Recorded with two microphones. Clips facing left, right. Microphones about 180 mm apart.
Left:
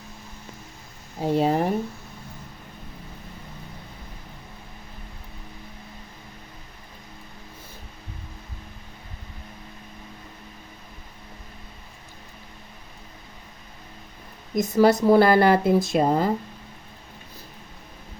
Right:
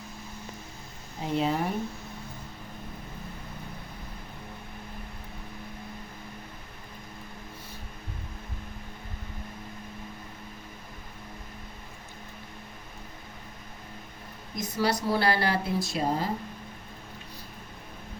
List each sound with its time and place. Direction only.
1.2 s a woman's voice: 45° left (ahead or behind)
14.5 s a woman's voice: 50° left (ahead or behind)